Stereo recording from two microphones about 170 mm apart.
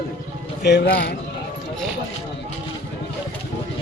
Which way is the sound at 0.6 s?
80° left.